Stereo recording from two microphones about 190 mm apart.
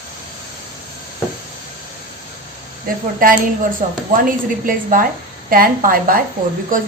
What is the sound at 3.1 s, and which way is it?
A woman's voice, 50° right (ahead or behind).